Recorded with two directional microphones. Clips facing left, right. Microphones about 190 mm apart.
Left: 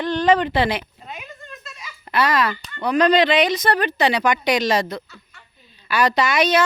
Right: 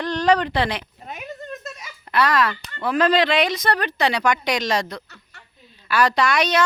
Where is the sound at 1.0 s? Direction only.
45° right (ahead or behind).